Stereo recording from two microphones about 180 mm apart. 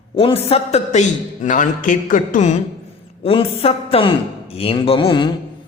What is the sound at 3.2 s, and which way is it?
A man's voice, 35° left (ahead or behind).